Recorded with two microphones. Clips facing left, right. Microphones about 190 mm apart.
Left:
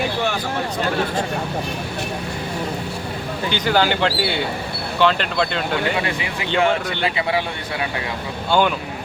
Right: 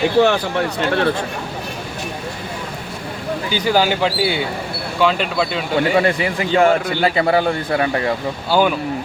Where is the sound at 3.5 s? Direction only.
10° right (ahead or behind).